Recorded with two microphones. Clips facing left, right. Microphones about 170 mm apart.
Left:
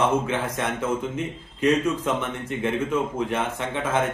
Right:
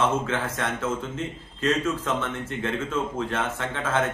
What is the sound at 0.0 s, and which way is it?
A man's voice, 15° left (ahead or behind).